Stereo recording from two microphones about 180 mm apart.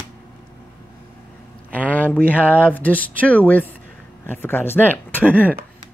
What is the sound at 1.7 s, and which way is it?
Speech, 10° left (ahead or behind).